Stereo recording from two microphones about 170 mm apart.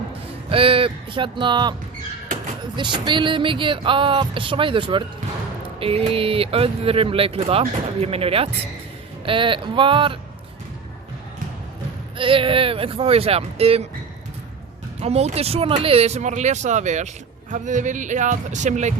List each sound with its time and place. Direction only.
0.5 s speech: 35° right (ahead or behind)
2.7 s speech: 25° right (ahead or behind)
12.1 s speech: 30° right (ahead or behind)
15.0 s speech: 40° right (ahead or behind)